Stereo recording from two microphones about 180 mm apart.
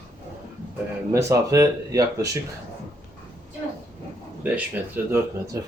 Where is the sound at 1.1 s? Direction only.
15° right (ahead or behind).